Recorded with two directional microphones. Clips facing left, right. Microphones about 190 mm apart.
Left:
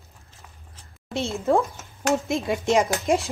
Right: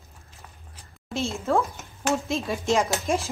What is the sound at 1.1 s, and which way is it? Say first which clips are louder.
A woman's voice: left 3 dB; 20° left (ahead or behind).